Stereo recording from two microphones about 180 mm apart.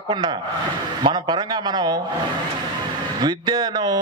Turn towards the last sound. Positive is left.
turn(degrees=-20)  # may be behind; listen again after turning